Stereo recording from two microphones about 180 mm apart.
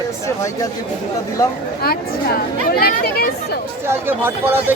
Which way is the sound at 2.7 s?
60° left (ahead or behind).